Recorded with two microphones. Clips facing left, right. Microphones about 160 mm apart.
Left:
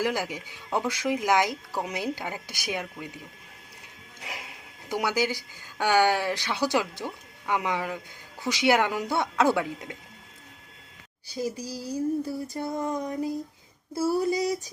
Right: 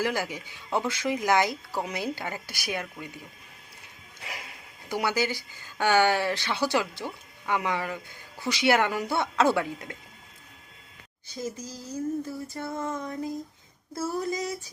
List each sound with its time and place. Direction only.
0.0 s speech: 15° left (ahead or behind)
4.2 s a sound: 15° left (ahead or behind)
4.9 s speech: 15° left (ahead or behind)
11.3 s speech: 10° left (ahead or behind)